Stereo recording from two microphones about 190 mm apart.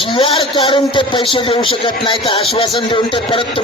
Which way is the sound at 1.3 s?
30° left (ahead or behind).